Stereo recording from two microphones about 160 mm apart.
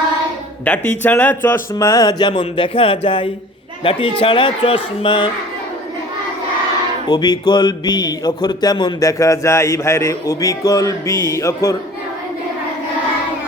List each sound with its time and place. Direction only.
0.6 s speech: 10° left (ahead or behind); by 5.3 s 30° left (ahead or behind)
7.1 s speech: 25° left (ahead or behind)